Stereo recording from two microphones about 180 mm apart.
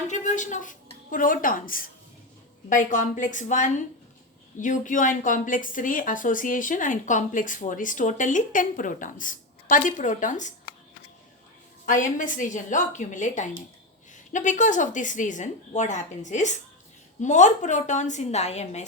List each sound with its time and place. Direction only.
0.1 s a woman's voice: 45° left (ahead or behind)
11.9 s a woman's voice: 45° left (ahead or behind)